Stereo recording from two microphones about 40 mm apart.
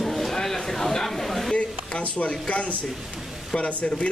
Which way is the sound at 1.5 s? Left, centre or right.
Left.